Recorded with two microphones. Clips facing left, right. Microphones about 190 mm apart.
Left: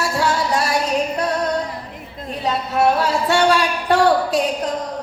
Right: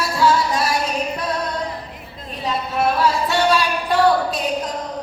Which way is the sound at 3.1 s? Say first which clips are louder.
Left 1 dB; 75° left (ahead or behind).